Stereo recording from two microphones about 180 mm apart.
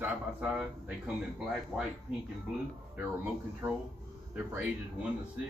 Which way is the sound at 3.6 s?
15° right (ahead or behind).